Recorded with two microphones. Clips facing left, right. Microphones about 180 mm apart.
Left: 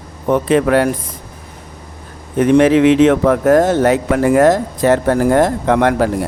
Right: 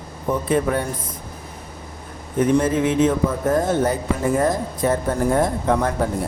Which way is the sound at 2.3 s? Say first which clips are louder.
Left 8 dB; 75° left (ahead or behind).